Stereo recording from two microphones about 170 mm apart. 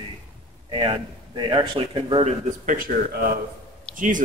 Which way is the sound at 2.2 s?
50° right (ahead or behind).